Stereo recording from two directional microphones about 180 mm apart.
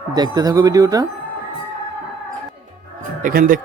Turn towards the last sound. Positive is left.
turn(degrees=-50)  # may be behind; listen again after turning